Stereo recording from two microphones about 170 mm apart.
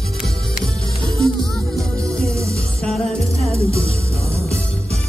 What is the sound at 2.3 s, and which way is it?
Music, 15° right (ahead or behind).